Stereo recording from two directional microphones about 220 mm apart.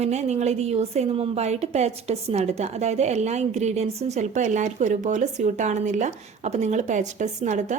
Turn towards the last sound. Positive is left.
turn(degrees=-35)  # may be behind; listen again after turning